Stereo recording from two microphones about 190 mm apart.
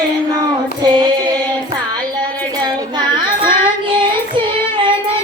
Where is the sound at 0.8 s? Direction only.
20° right (ahead or behind).